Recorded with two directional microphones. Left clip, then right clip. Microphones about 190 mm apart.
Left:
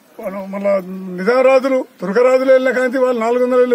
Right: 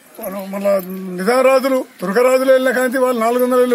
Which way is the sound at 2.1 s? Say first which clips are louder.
Left 1 dB; 15° left (ahead or behind).